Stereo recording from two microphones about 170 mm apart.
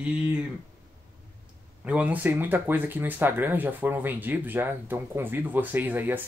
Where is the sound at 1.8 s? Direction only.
10° right (ahead or behind).